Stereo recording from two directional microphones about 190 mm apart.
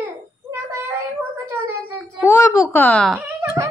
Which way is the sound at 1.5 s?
15° right (ahead or behind).